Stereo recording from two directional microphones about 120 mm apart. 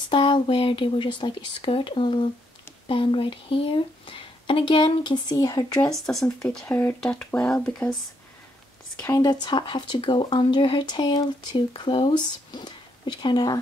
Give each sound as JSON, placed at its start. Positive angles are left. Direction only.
{"t": 0.1, "sound": "speech", "side_deg": 40}
{"t": 6.4, "sound": "speech", "side_deg": 5}
{"t": 6.7, "sound": "speech", "side_deg": 15}
{"t": 7.0, "sound": "speech", "side_deg": 5}
{"t": 9.0, "sound": "speech", "side_deg": 30}